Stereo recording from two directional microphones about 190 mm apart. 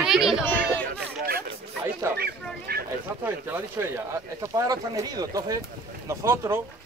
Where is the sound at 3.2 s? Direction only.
10° right (ahead or behind).